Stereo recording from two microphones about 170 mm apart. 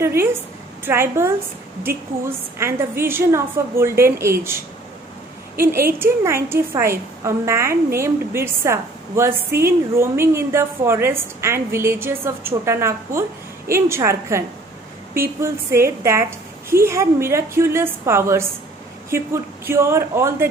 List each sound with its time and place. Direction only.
0.8 s a woman's voice: 15° right (ahead or behind)
5.6 s a woman's voice: 10° right (ahead or behind)